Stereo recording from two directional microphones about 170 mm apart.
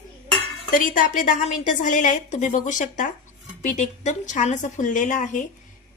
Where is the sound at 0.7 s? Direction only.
50° left (ahead or behind).